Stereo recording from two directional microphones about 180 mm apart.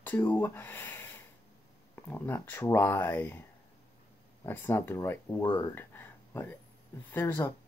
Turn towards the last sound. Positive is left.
turn(degrees=10)  # may be behind; listen again after turning